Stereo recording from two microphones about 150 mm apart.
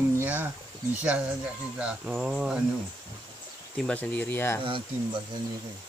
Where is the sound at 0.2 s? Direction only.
10° right (ahead or behind).